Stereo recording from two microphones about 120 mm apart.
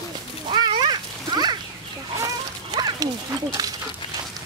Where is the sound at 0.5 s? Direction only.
40° right (ahead or behind).